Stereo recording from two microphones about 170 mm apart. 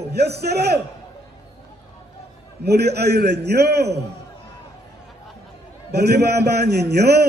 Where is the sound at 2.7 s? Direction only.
70° right (ahead or behind).